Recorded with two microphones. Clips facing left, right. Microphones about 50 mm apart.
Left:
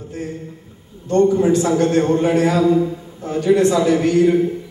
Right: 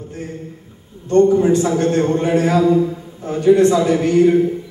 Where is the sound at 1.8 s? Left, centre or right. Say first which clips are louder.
Left 1 dB; right.